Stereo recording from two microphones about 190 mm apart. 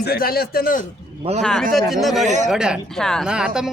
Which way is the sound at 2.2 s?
40° right (ahead or behind).